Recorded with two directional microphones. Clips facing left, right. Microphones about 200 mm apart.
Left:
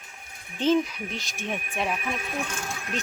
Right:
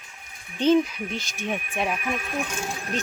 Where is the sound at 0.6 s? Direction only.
Centre (ahead or behind).